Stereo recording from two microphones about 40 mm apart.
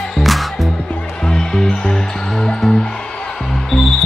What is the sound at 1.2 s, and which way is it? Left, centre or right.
Music, centre.